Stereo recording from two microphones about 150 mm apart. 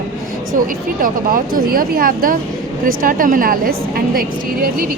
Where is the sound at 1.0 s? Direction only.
65° right (ahead or behind).